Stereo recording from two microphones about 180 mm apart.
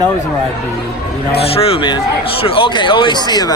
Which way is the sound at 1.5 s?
30° left (ahead or behind).